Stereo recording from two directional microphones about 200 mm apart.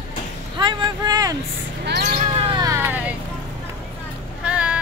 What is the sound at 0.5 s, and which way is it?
Speech, 25° right (ahead or behind).